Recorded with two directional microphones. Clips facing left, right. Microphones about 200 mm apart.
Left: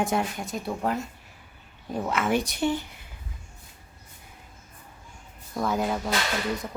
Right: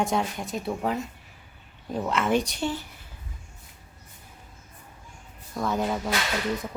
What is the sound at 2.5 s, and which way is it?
Speech, 15° left (ahead or behind).